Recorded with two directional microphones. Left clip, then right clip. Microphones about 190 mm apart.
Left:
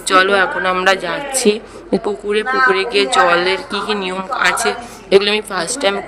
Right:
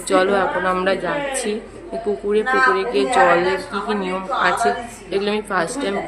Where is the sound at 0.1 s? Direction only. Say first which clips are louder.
Left 4 dB; 50° left (ahead or behind).